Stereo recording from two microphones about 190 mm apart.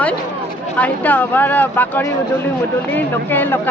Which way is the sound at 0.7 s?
10° left (ahead or behind).